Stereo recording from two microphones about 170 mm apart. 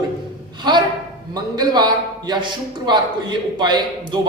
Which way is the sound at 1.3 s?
25° right (ahead or behind).